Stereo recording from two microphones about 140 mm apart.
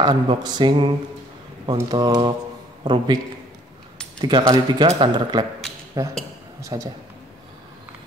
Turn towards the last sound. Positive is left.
turn(degrees=-25)  # may be behind; listen again after turning